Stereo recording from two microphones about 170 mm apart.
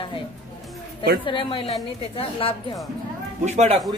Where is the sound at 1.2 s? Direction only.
30° left (ahead or behind).